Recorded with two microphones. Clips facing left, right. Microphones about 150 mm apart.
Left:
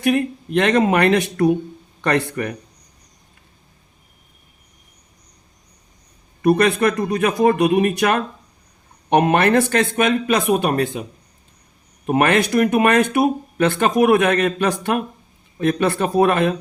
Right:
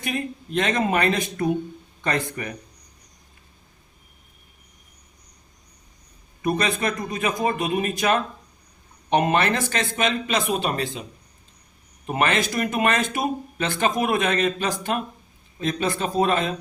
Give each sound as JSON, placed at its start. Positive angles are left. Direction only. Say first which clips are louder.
{"t": 0.0, "sound": "speech", "louder": "left 10 dB", "side_deg": 65}
{"t": 6.4, "sound": "speech", "louder": "left 8 dB", "side_deg": 60}
{"t": 12.0, "sound": "speech", "louder": "left 6 dB", "side_deg": 55}